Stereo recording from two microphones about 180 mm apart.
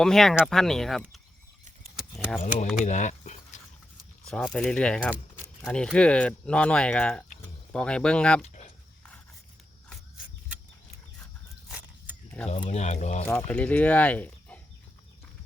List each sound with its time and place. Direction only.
0.0 s speech: centre (ahead or behind)
2.1 s keys jangling: centre (ahead or behind)
2.8 s a sound: 40° left (ahead or behind)
4.3 s speech: 5° left (ahead or behind)
12.5 s speech: 40° left (ahead or behind)
13.2 s speech: 10° left (ahead or behind)